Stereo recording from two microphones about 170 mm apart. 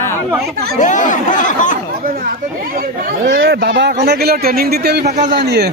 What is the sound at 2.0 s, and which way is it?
Chatter, 60° right (ahead or behind).